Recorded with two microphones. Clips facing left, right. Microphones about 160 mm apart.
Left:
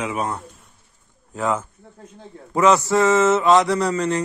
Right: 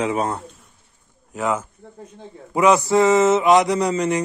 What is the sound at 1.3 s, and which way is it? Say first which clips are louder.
A man's voice: even; 15° right (ahead or behind).